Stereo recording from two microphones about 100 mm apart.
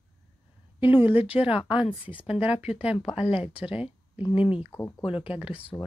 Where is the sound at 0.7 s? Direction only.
20° right (ahead or behind).